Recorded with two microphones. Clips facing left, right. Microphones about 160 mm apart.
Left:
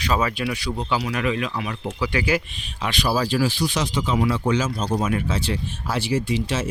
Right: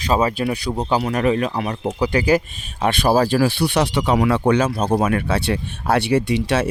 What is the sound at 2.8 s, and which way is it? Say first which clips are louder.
Speech: right 7 dB; 50° right (ahead or behind).